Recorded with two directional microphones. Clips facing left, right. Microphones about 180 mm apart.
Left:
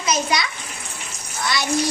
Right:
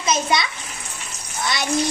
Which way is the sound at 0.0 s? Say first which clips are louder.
Right 1 dB; 25° right (ahead or behind).